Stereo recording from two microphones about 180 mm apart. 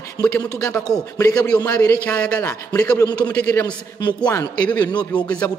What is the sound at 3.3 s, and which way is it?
Speech, 5° left (ahead or behind).